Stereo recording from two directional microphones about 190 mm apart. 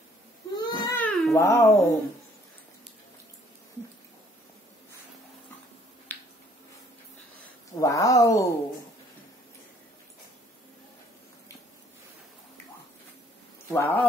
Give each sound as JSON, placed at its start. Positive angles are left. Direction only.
{"t": 0.6, "sound": "cat", "side_deg": 20}
{"t": 7.7, "sound": "speech", "side_deg": 20}
{"t": 13.7, "sound": "speech", "side_deg": 15}